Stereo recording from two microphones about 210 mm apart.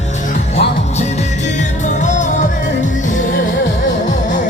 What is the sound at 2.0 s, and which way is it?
Music, 35° left (ahead or behind).